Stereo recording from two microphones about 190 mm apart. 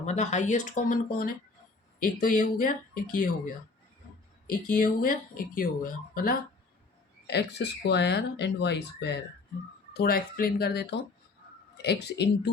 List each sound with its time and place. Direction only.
0.0 s speech: 35° left (ahead or behind)
7.3 s speech: 65° left (ahead or behind)
9.9 s speech: 55° left (ahead or behind)